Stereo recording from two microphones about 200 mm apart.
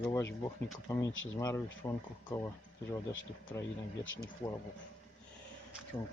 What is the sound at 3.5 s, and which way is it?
Speech, 15° left (ahead or behind).